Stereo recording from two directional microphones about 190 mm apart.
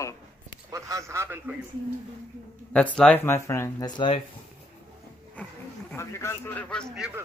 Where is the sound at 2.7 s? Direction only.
5° left (ahead or behind); by 4.2 s 25° left (ahead or behind).